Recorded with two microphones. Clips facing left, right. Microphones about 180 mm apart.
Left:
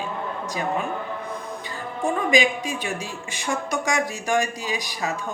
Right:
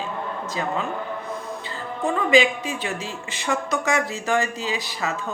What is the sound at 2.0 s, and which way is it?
Speech, 15° left (ahead or behind).